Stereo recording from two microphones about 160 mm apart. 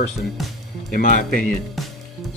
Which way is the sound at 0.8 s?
60° left (ahead or behind).